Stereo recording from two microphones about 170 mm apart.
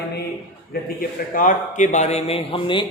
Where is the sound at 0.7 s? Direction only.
65° left (ahead or behind).